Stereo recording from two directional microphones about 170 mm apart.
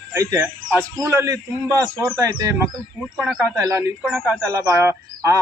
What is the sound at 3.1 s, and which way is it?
Speech, 5° right (ahead or behind).